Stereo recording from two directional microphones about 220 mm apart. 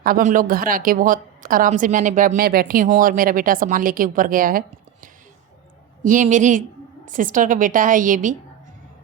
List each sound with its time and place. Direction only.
0.0 s a woman's voice: 40° right (ahead or behind)
6.0 s a woman's voice: 35° right (ahead or behind)